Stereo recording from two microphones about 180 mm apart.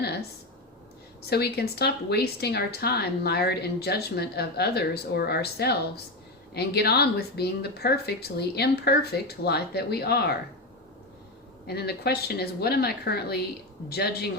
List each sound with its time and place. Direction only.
0.0 s a sound: 65° left (ahead or behind)
1.3 s a woman's voice: 60° left (ahead or behind)
11.6 s a woman's voice: 65° left (ahead or behind)